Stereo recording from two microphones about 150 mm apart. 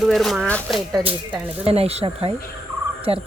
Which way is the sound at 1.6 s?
40° right (ahead or behind).